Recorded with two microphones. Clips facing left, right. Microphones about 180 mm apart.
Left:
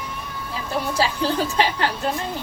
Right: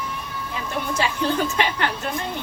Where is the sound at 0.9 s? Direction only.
35° left (ahead or behind).